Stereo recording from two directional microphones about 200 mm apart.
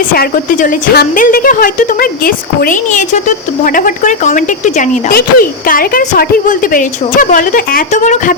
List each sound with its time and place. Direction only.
0.1 s a woman's voice: 45° left (ahead or behind)